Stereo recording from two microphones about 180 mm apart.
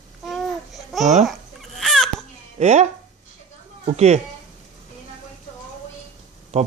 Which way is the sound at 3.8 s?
40° right (ahead or behind).